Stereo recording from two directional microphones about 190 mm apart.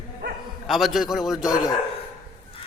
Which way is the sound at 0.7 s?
Centre (ahead or behind).